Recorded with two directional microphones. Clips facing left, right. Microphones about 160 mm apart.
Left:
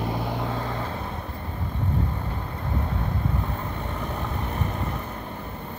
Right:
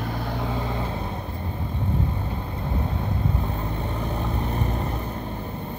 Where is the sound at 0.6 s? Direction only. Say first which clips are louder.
Right 2 dB; 15° right (ahead or behind).